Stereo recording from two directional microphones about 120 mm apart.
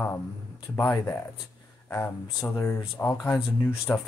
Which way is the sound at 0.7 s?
20° left (ahead or behind).